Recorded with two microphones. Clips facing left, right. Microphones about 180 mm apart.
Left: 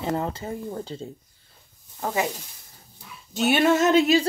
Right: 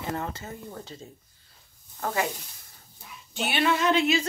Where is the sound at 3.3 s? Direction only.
45° left (ahead or behind).